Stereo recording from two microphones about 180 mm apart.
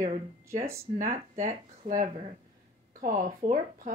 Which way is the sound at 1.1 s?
45° right (ahead or behind).